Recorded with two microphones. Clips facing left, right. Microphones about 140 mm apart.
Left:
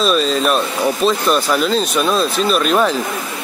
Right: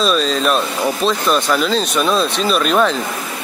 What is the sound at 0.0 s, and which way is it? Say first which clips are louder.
Speech: left 1 dB; centre (ahead or behind).